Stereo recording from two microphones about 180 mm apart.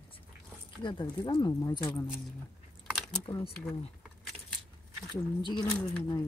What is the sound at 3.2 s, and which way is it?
Speech, 30° left (ahead or behind).